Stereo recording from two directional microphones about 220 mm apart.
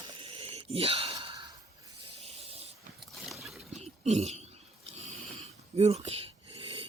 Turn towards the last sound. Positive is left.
turn(degrees=-25)  # may be behind; listen again after turning